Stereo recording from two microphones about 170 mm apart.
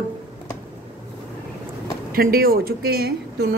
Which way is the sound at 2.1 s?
60° right (ahead or behind).